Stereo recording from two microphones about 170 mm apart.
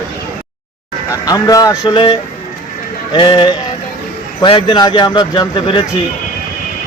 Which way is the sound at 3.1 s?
25° left (ahead or behind).